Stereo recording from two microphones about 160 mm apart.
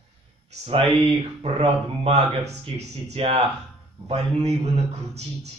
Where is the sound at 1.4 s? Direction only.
40° right (ahead or behind).